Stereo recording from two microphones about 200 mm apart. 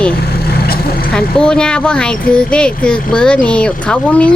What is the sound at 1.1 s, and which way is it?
Speech, 5° left (ahead or behind).